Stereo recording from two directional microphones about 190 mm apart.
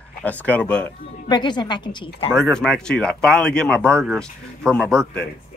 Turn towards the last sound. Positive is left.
turn(degrees=5)  # may be behind; listen again after turning